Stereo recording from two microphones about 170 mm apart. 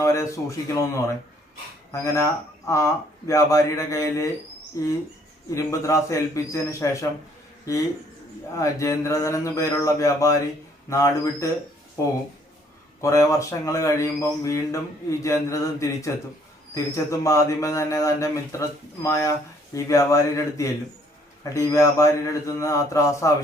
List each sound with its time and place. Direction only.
0.0 s speech: 15° left (ahead or behind)
1.9 s speech: 15° left (ahead or behind)
8.5 s speech: 20° left (ahead or behind)